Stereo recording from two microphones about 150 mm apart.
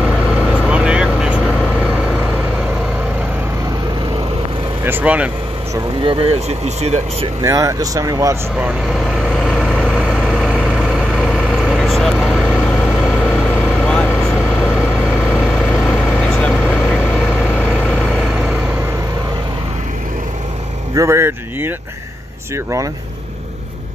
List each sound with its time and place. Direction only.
0.0 s vehicle: 5° right (ahead or behind)
4.8 s speech: 10° right (ahead or behind)
6.0 s speech: 45° right (ahead or behind)
7.4 s speech: 20° right (ahead or behind)
9.0 s vehicle: centre (ahead or behind)
13.8 s vehicle: 5° left (ahead or behind)
14.6 s vehicle: 5° right (ahead or behind)
20.9 s speech: 20° right (ahead or behind)